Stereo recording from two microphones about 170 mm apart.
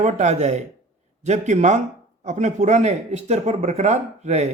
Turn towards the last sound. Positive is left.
turn(degrees=-40)  # may be behind; listen again after turning